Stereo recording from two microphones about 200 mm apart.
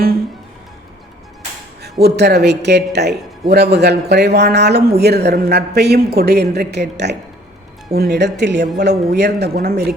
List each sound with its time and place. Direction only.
1.8 s speech: 55° right (ahead or behind)